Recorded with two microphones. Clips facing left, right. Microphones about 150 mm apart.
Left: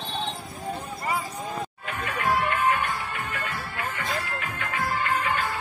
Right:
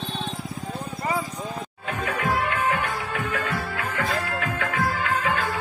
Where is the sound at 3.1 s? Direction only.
90° right.